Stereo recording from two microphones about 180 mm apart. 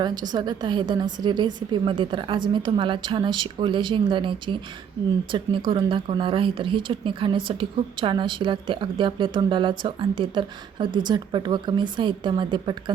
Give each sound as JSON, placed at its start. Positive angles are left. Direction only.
{"t": 0.0, "sound": "speech", "side_deg": -25}